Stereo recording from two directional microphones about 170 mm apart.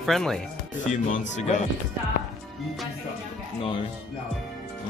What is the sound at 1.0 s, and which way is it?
Speech, 45° left (ahead or behind).